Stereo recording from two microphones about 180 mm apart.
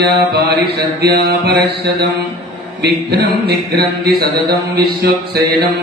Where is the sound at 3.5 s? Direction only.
65° right (ahead or behind).